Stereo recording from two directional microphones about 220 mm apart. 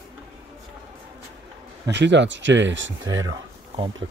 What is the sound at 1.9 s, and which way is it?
Speech, 55° right (ahead or behind).